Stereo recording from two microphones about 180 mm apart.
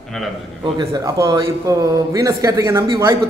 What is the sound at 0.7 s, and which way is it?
Speech, 20° right (ahead or behind).